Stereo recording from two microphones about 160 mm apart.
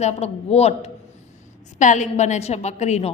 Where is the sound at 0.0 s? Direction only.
45° left (ahead or behind).